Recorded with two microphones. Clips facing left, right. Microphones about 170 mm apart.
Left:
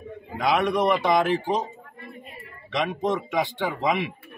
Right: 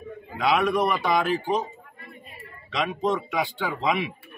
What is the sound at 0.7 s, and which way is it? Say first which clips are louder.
Speech: left 2 dB; 20° left (ahead or behind).